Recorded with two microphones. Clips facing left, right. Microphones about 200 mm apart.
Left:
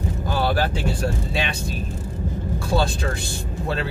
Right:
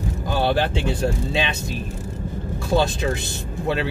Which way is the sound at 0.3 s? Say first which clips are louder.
Right 2 dB; 20° right (ahead or behind).